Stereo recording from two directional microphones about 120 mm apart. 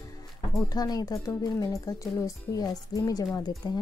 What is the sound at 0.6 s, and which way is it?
Speech, 30° left (ahead or behind).